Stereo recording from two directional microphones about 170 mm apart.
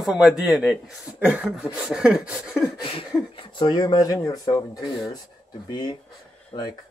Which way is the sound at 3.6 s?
25° left (ahead or behind).